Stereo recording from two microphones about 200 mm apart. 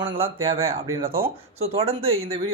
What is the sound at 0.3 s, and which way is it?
Speech, 90° right.